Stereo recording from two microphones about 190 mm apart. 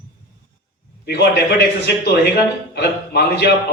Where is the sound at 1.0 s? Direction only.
60° left (ahead or behind).